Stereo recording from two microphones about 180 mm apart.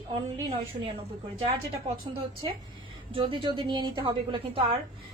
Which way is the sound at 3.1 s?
30° right (ahead or behind).